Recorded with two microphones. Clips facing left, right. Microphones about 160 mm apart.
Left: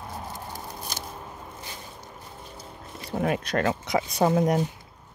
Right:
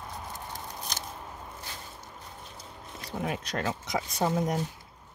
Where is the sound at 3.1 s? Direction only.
60° left (ahead or behind).